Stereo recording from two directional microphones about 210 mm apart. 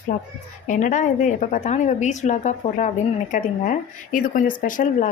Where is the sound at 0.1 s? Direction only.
40° left (ahead or behind).